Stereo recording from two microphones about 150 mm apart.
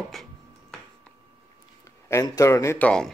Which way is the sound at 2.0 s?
20° left (ahead or behind).